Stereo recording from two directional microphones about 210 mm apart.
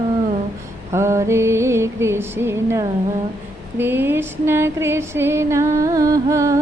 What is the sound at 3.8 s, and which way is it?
Female singing, 10° right (ahead or behind).